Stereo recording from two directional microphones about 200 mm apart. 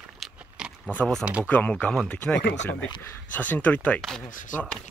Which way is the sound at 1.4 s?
10° left (ahead or behind).